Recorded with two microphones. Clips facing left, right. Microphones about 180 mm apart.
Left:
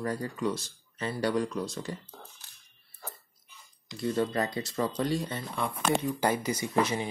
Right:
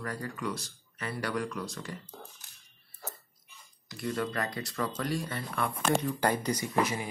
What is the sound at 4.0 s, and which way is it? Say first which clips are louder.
Speech: left 4 dB; 25° left (ahead or behind).